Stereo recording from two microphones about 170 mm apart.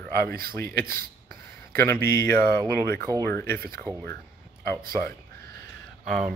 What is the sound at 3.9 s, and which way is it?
Speech, 15° right (ahead or behind).